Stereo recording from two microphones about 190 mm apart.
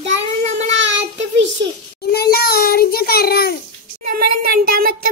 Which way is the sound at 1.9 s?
55° left (ahead or behind).